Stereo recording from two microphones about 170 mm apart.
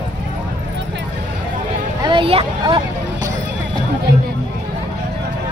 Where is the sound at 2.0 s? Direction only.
30° right (ahead or behind).